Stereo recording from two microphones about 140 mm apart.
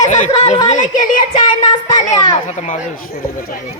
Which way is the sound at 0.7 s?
65° left (ahead or behind).